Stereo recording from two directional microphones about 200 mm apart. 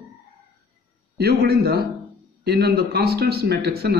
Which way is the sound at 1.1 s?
50° right (ahead or behind).